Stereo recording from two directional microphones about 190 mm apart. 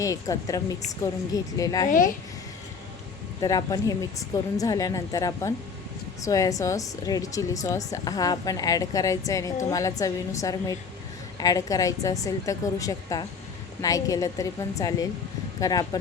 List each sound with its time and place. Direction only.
0.0 s a woman's voice: 15° left (ahead or behind)
3.4 s a woman's voice: 20° left (ahead or behind)